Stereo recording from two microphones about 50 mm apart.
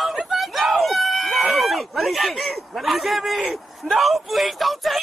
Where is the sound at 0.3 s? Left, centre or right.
Centre.